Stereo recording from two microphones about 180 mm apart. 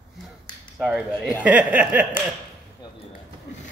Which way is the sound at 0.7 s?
5° right (ahead or behind).